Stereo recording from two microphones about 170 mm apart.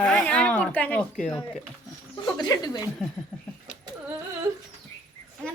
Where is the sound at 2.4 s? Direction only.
20° left (ahead or behind).